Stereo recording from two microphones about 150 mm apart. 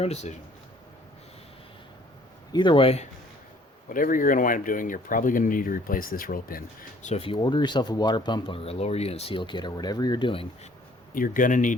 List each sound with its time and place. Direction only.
0.0 s speech: 45° left (ahead or behind)
2.5 s speech: 30° left (ahead or behind)
3.8 s speech: 65° left (ahead or behind)
7.1 s speech: 40° left (ahead or behind)
11.1 s a man's voice: 65° left (ahead or behind)